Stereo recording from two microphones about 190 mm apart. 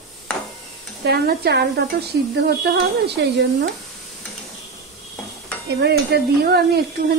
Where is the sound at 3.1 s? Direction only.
60° right (ahead or behind).